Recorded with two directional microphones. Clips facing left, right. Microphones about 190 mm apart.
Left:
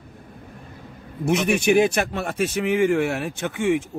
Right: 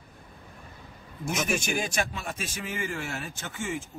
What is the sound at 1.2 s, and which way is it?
Speech, 65° left (ahead or behind).